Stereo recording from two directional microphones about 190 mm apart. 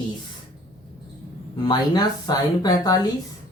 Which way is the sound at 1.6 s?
20° left (ahead or behind).